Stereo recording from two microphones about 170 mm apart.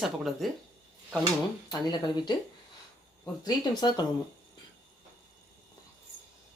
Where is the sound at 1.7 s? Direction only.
25° left (ahead or behind).